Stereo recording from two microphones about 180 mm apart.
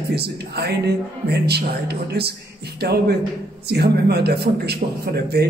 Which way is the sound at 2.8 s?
65° right (ahead or behind).